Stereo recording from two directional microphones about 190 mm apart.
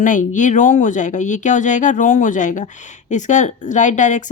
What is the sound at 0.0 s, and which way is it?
A woman's voice, 45° left (ahead or behind).